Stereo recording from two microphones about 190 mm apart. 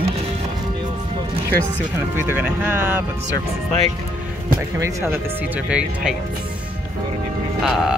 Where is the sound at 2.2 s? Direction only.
10° right (ahead or behind).